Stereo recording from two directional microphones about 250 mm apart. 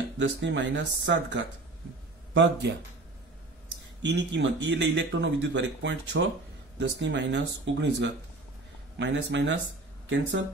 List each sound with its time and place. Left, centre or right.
0.2 s speech: right
4.1 s speech: right